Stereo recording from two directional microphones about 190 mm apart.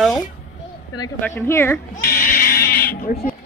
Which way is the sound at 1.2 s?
10° left (ahead or behind).